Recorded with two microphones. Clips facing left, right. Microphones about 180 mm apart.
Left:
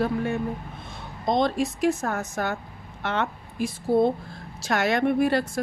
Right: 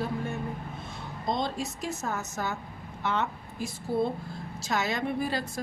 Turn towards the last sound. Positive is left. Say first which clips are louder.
# left 8 dB
turn(degrees=65)  # may be behind; listen again after turning